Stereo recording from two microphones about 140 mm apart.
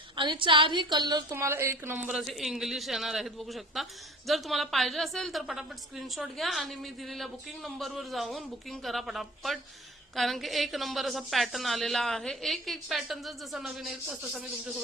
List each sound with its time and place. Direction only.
0.2 s a woman's voice: 35° right (ahead or behind)
1.3 s speech: 20° right (ahead or behind)
2.0 s a woman's voice: centre (ahead or behind)